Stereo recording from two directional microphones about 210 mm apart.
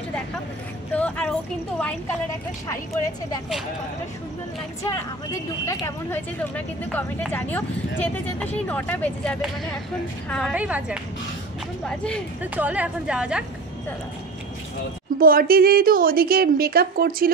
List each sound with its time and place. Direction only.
0.9 s a sound: 5° left (ahead or behind)
2.7 s speech: 15° left (ahead or behind)
5.7 s a woman's voice: 15° left (ahead or behind); by 11.0 s 5° right (ahead or behind)
11.8 s a woman's voice: 5° left (ahead or behind)
12.5 s a woman's voice: 5° right (ahead or behind)
15.1 s a woman's voice: 45° right (ahead or behind)